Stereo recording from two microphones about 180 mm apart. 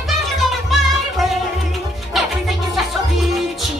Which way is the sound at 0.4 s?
Centre (ahead or behind).